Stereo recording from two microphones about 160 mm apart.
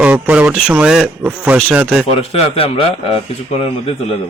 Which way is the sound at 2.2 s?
40° left (ahead or behind).